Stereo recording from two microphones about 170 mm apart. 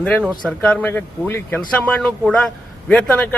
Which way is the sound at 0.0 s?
5° left (ahead or behind).